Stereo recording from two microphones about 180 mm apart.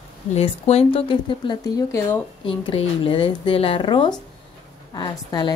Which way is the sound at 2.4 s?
30° left (ahead or behind).